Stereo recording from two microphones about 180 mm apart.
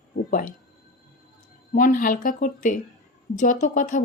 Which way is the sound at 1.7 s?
50° left (ahead or behind).